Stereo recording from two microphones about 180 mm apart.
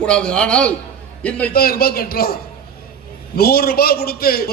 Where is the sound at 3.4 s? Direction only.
60° left (ahead or behind).